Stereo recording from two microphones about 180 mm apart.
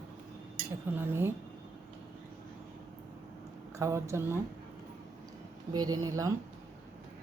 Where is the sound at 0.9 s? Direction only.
15° right (ahead or behind).